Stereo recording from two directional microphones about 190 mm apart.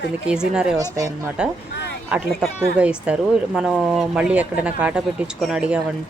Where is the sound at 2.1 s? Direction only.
5° right (ahead or behind).